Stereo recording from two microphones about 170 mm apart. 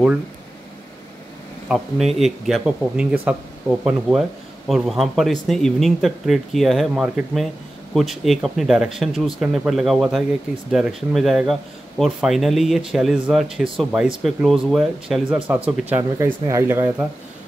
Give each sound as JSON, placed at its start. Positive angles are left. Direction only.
{"t": 1.7, "sound": "speech", "side_deg": 0}